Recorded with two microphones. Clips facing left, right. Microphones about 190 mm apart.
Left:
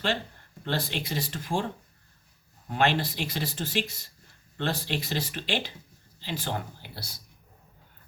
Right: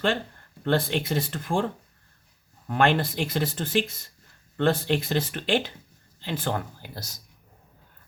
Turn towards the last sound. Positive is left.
turn(degrees=-45)  # may be behind; listen again after turning